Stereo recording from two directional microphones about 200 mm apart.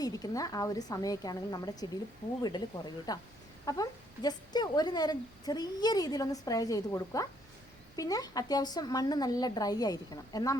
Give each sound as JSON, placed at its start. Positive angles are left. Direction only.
{"t": 0.0, "sound": "a woman's voice", "side_deg": 20}